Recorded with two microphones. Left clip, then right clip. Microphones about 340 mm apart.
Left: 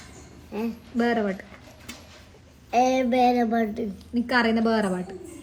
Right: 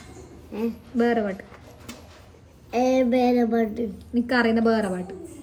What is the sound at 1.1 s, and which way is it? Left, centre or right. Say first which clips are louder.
Speech: even; centre.